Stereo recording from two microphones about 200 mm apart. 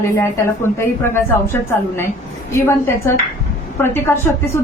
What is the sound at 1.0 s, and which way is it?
A woman's voice, 10° left (ahead or behind).